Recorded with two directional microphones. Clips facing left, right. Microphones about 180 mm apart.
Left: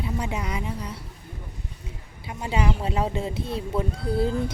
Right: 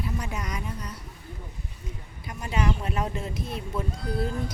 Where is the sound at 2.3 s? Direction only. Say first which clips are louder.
Left 2 dB; 25° left (ahead or behind).